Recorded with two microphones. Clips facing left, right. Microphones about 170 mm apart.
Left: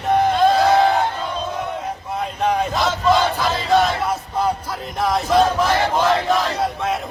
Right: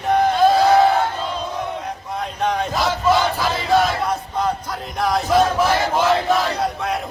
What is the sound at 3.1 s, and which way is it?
Battle cry, centre (ahead or behind).